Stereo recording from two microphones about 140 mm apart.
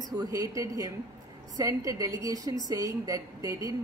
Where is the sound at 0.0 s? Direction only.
25° right (ahead or behind).